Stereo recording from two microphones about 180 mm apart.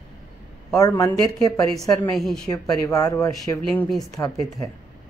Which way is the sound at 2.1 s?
Centre (ahead or behind).